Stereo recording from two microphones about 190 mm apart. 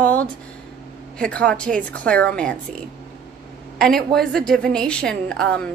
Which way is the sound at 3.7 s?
Centre (ahead or behind).